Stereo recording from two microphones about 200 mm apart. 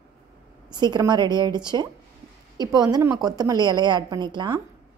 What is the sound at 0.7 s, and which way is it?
A woman's voice, 20° right (ahead or behind).